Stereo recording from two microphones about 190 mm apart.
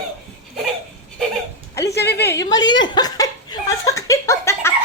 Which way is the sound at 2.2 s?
15° left (ahead or behind).